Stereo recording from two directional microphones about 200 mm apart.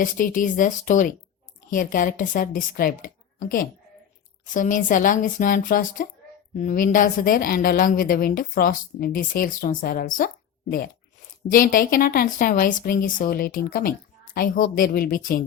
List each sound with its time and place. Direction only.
0.0 s speech: 40° left (ahead or behind)
4.4 s a woman's voice: 40° left (ahead or behind)